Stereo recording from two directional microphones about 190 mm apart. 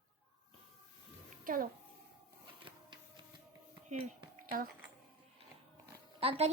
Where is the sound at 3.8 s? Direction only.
40° right (ahead or behind).